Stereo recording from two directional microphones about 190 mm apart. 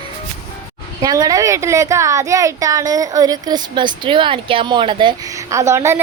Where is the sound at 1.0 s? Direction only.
20° right (ahead or behind).